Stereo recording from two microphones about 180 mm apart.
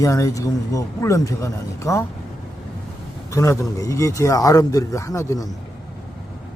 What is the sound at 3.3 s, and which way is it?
Speech, 15° left (ahead or behind).